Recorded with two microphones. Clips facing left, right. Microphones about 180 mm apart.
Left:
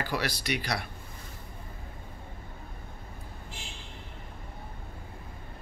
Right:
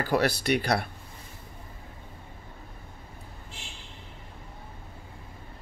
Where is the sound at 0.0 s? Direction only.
50° right (ahead or behind).